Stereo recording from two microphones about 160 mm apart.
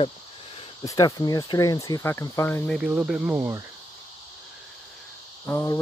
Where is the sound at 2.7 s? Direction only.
5° right (ahead or behind).